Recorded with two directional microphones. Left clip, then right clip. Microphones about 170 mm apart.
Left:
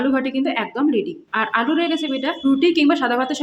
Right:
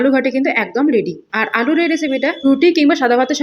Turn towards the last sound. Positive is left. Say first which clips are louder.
# right 5 dB
turn(degrees=-20)  # may be behind; listen again after turning